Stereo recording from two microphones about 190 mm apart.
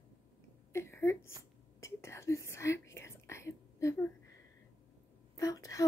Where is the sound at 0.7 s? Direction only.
15° left (ahead or behind).